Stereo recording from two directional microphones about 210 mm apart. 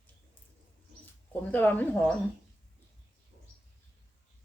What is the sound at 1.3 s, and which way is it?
Speech, 10° left (ahead or behind).